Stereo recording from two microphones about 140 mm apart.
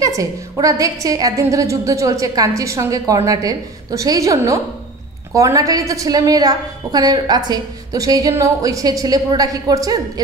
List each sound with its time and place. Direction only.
0.0 s a woman's voice: 25° right (ahead or behind)